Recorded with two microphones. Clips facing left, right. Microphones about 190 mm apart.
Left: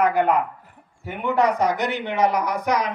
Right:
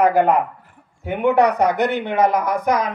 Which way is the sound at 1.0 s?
65° right (ahead or behind).